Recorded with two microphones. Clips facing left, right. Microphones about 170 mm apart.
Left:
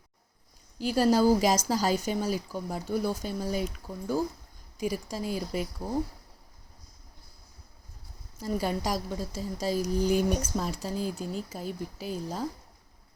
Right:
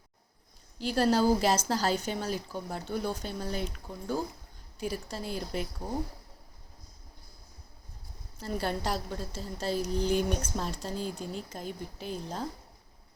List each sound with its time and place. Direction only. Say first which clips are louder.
0.9 s speech: left 3 dB; 10° left (ahead or behind)
8.4 s speech: left 3 dB; 10° left (ahead or behind)